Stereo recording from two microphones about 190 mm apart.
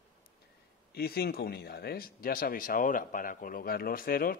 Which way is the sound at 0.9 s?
55° left (ahead or behind).